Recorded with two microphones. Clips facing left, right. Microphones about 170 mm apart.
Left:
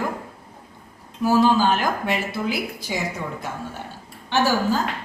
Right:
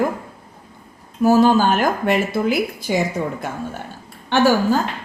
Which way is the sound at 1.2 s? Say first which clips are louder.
Right 4 dB; 50° right (ahead or behind).